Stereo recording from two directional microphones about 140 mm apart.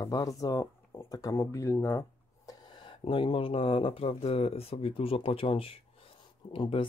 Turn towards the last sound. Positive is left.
turn(degrees=40)  # may be behind; listen again after turning